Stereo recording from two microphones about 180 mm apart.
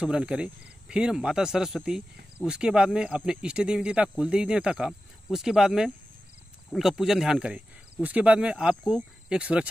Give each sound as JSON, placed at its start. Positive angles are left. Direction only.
{"t": 0.0, "sound": "cricket", "side_deg": -5}